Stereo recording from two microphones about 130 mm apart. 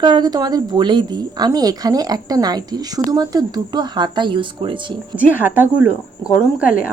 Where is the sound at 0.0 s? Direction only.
35° right (ahead or behind).